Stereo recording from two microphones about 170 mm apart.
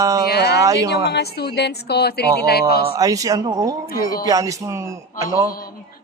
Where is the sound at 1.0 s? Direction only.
75° left (ahead or behind).